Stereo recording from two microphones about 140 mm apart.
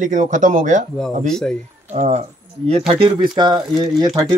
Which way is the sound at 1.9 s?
50° right (ahead or behind).